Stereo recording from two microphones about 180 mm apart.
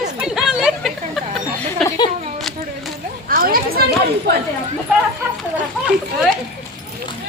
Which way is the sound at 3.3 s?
55° right (ahead or behind).